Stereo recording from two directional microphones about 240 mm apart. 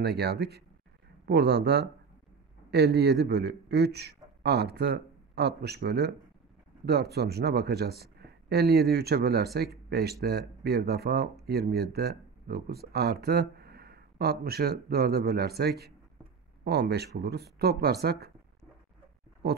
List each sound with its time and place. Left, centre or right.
0.0 s a man's voice: right
19.4 s speech: right